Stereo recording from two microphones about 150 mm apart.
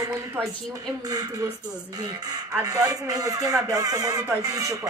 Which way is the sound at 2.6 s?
25° right (ahead or behind).